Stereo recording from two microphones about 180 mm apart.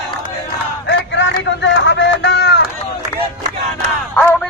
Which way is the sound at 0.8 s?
85° left.